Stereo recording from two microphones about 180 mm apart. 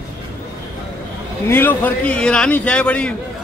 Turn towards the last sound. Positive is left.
turn(degrees=5)  # may be behind; listen again after turning